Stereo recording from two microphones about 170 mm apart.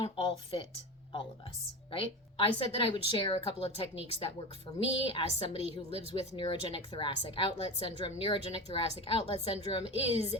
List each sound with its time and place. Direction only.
0.0 s a woman's voice: 30° left (ahead or behind)
1.9 s a woman's voice: 35° left (ahead or behind)